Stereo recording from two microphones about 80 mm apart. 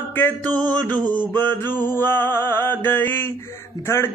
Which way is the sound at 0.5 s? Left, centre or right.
Centre.